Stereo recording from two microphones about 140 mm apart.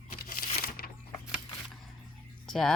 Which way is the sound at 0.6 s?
90° left.